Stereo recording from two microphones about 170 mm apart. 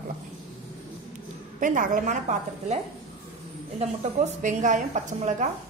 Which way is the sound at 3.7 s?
45° right (ahead or behind).